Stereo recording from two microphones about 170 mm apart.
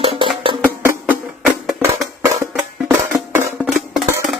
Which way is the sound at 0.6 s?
10° right (ahead or behind).